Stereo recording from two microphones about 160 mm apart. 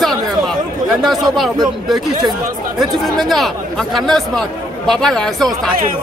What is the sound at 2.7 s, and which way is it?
A man's voice, centre (ahead or behind).